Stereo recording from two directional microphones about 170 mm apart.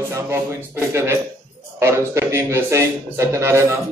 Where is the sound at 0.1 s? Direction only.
15° right (ahead or behind).